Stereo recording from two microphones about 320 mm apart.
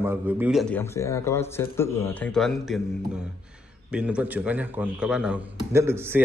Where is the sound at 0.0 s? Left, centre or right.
Centre.